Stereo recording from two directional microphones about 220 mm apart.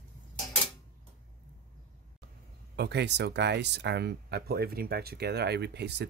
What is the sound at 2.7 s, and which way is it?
Speech, 50° right (ahead or behind).